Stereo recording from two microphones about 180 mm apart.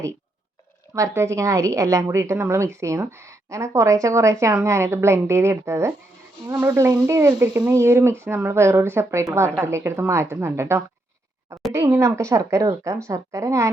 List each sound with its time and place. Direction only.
0.9 s speech: 15° right (ahead or behind)